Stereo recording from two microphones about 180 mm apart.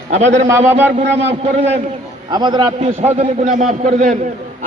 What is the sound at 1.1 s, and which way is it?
Speech, 35° right (ahead or behind).